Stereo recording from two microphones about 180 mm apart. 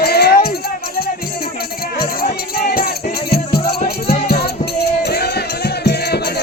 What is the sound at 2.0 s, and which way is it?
Music, 55° left (ahead or behind).